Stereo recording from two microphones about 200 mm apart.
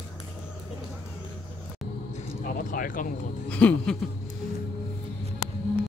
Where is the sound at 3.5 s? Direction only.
5° left (ahead or behind).